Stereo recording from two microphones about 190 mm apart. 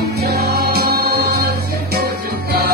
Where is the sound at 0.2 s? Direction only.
55° right (ahead or behind).